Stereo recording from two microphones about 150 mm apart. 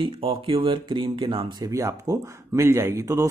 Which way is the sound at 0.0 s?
35° right (ahead or behind).